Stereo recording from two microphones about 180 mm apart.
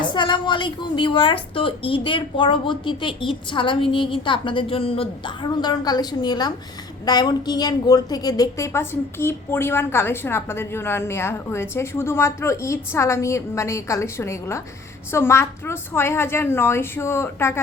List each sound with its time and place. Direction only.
0.0 s a woman's voice: 25° left (ahead or behind)